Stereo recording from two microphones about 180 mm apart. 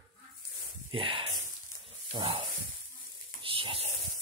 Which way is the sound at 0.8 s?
30° right (ahead or behind).